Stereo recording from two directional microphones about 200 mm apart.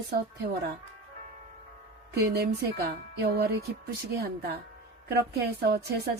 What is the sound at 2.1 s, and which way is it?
A woman's voice, 55° right (ahead or behind).